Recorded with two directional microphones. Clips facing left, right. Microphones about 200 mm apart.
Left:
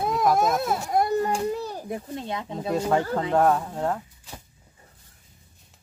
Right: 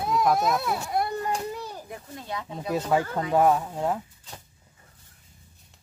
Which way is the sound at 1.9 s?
25° left (ahead or behind).